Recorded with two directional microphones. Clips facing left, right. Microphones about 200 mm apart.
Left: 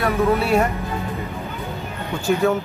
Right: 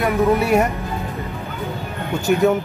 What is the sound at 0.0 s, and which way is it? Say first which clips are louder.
Speech: right 2 dB; 15° right (ahead or behind).